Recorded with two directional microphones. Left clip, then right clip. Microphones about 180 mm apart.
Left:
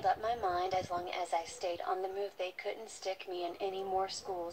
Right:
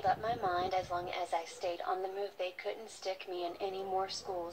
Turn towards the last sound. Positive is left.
turn(degrees=40)  # may be behind; listen again after turning